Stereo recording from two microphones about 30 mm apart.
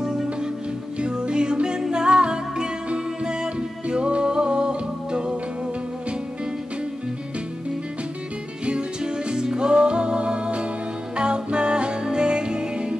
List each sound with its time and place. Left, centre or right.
0.0 s music: right
2.0 s humming: right
3.3 s music: right
8.6 s music: right